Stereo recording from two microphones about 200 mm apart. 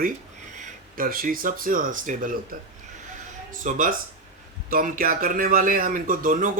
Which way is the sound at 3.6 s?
40° right (ahead or behind).